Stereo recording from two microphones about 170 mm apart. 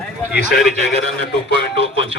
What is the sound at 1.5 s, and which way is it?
Speech, 90° left.